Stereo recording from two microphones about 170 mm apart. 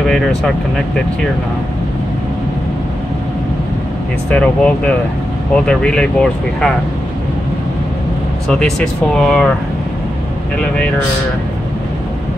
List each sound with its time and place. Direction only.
0.1 s speech: centre (ahead or behind)
4.3 s speech: 5° left (ahead or behind)
8.5 s speech: 5° left (ahead or behind)